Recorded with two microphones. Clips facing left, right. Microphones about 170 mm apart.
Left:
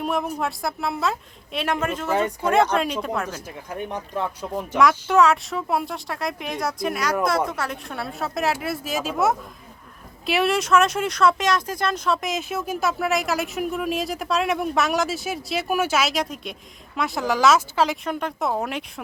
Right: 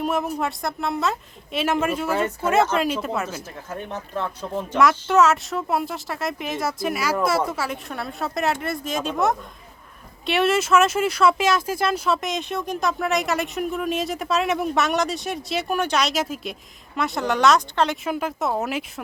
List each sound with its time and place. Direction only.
0.0 s speech: centre (ahead or behind)
3.7 s speech: 15° left (ahead or behind)
4.8 s speech: centre (ahead or behind)